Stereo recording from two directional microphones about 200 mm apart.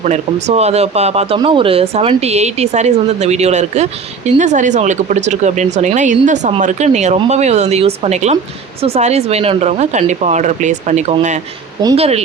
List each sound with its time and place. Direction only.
0.0 s a woman's voice: 35° right (ahead or behind)